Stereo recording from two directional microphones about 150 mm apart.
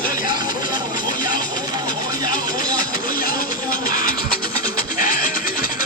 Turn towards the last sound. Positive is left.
turn(degrees=65)  # may be behind; listen again after turning